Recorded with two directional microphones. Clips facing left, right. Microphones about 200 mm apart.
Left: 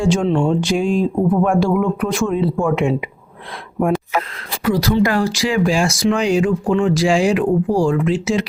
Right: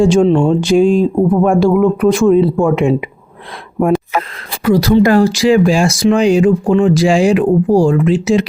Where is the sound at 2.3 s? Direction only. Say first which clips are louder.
Right 7 dB; 30° right (ahead or behind).